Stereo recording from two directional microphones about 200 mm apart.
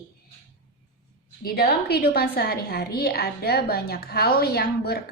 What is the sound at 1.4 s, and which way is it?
A woman's voice, 50° left (ahead or behind).